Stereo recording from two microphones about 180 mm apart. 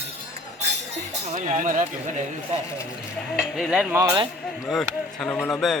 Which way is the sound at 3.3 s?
Centre (ahead or behind).